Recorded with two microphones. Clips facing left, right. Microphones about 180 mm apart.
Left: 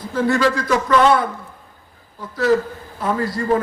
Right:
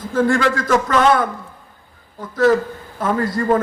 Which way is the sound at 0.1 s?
50° right (ahead or behind).